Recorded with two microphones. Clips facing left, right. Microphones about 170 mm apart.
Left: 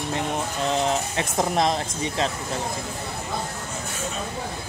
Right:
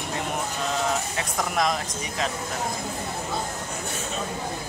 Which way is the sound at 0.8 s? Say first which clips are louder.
Left 2 dB; 25° left (ahead or behind).